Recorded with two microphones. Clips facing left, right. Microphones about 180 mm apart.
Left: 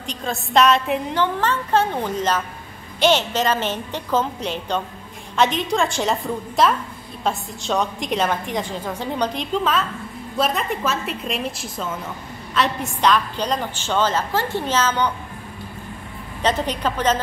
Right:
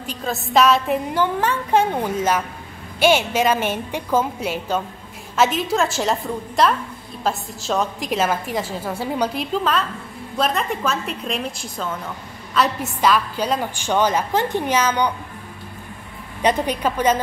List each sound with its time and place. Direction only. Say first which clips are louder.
0.0 s a woman's voice: right 1 dB; 5° right (ahead or behind)
16.4 s a woman's voice: right 2 dB; 10° right (ahead or behind)